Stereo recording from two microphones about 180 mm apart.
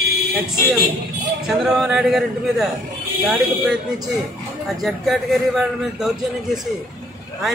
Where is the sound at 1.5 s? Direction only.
Centre (ahead or behind).